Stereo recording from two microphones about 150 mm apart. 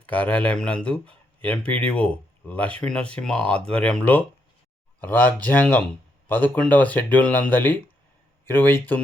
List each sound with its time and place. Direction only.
0.0 s speech: 10° left (ahead or behind)